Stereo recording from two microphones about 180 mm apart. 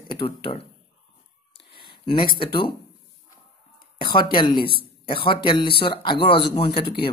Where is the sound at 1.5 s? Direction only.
30° left (ahead or behind).